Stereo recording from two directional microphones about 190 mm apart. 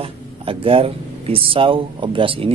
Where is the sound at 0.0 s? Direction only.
30° right (ahead or behind).